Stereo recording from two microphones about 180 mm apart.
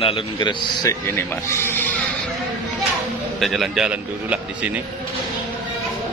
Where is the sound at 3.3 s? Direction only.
Centre (ahead or behind).